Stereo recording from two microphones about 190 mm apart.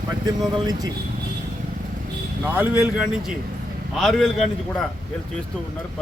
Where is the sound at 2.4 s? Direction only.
10° right (ahead or behind).